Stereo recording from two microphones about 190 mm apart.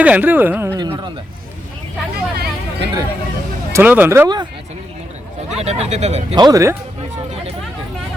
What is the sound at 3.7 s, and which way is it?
Speech, 10° right (ahead or behind).